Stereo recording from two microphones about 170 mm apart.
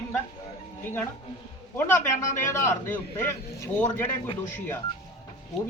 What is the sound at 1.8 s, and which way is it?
A man's voice, 15° left (ahead or behind).